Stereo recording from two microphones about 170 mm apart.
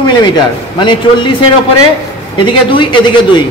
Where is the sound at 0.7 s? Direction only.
30° left (ahead or behind).